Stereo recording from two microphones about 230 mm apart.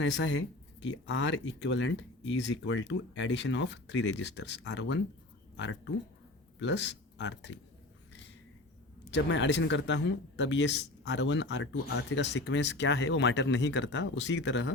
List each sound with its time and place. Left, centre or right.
0.0 s speech: left
9.0 s speech: left